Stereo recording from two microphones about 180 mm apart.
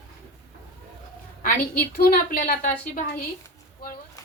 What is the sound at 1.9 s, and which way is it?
Speech, 55° left (ahead or behind).